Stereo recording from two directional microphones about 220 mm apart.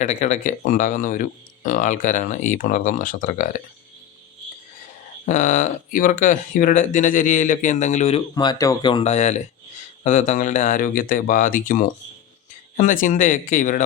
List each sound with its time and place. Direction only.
0.0 s speech: 35° left (ahead or behind)
5.2 s speech: 35° left (ahead or behind)